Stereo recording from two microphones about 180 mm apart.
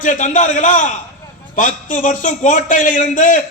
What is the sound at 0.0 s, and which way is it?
A man's voice, 45° left (ahead or behind).